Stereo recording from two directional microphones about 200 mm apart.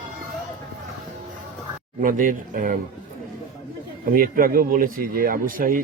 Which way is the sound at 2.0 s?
40° right (ahead or behind).